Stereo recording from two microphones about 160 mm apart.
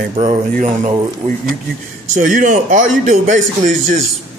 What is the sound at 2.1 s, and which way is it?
A man's voice, 55° right (ahead or behind).